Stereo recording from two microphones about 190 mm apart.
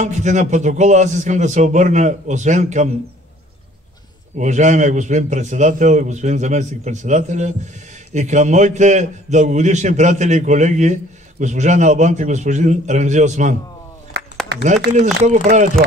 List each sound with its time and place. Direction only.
0.0 s a man's voice: 40° right (ahead or behind)
4.4 s a man's voice: 40° right (ahead or behind)
14.2 s a sound: 60° right (ahead or behind)
15.2 s a man's voice: 40° right (ahead or behind)